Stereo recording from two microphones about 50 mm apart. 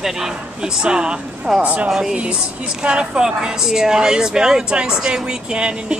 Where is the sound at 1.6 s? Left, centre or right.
Right.